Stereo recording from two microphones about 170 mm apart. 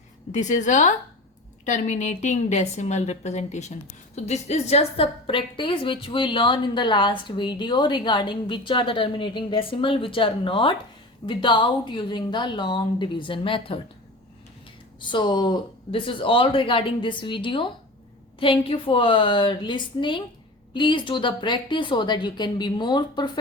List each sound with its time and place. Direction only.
0.3 s a woman's voice: 45° left (ahead or behind)
15.0 s a woman's voice: 25° left (ahead or behind)